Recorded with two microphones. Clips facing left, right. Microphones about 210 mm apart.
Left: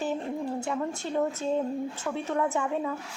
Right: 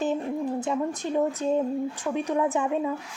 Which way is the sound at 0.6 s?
15° right (ahead or behind).